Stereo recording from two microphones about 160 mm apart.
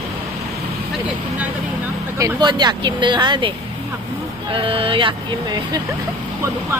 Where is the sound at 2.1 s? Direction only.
25° right (ahead or behind).